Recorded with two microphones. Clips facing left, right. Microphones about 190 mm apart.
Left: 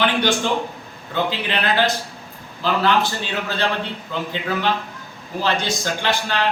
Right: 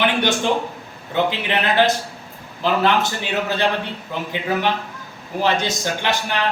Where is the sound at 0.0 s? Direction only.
20° right (ahead or behind).